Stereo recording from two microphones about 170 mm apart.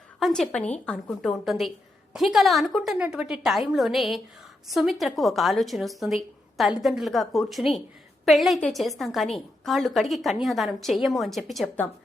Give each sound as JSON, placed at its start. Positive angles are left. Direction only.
{"t": 0.2, "sound": "a woman's voice", "side_deg": 0}